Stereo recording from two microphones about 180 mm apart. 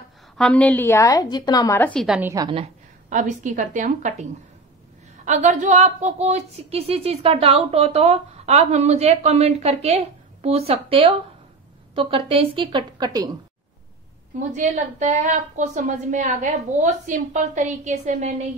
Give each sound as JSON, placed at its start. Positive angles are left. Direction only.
{"t": 0.4, "sound": "a woman's voice", "side_deg": 5}
{"t": 2.0, "sound": "a woman's voice", "side_deg": -5}
{"t": 2.3, "sound": "a woman's voice", "side_deg": -25}
{"t": 2.6, "sound": "a woman's voice", "side_deg": -45}
{"t": 14.5, "sound": "a woman's voice", "side_deg": -40}